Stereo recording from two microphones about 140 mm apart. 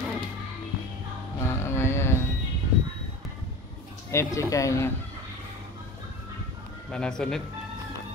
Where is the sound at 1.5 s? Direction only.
15° left (ahead or behind).